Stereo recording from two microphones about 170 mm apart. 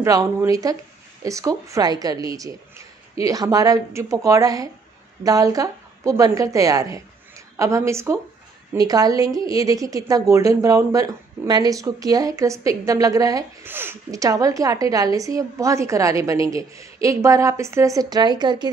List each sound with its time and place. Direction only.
0.0 s speech: 20° right (ahead or behind)